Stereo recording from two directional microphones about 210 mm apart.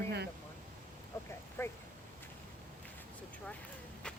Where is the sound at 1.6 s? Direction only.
10° left (ahead or behind).